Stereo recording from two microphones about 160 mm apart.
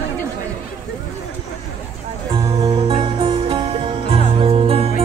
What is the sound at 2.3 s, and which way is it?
Music, 35° right (ahead or behind).